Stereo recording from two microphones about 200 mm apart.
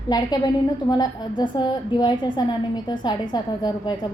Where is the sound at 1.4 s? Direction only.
20° left (ahead or behind).